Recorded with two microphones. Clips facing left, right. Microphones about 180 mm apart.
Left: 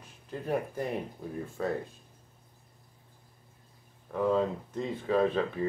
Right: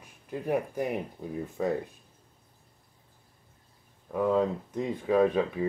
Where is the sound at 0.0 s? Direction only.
10° right (ahead or behind).